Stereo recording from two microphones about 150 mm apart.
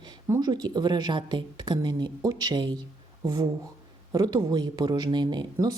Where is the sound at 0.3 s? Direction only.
25° right (ahead or behind).